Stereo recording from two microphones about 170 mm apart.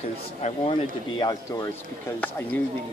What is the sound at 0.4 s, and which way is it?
Speech, 35° left (ahead or behind).